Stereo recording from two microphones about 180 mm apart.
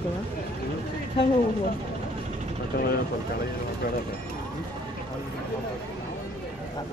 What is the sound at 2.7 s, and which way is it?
Speech, 60° left (ahead or behind).